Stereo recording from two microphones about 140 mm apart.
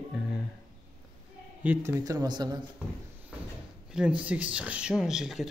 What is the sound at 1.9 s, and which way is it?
Speech, 25° right (ahead or behind).